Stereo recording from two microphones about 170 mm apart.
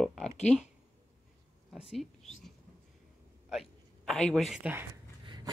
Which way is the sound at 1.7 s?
Centre (ahead or behind).